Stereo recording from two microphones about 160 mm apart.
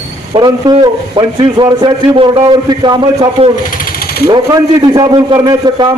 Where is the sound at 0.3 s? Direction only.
25° right (ahead or behind).